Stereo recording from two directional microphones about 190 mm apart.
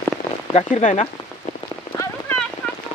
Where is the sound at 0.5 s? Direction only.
40° left (ahead or behind).